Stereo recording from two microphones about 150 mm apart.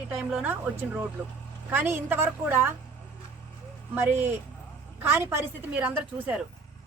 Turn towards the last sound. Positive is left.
turn(degrees=-10)  # may be behind; listen again after turning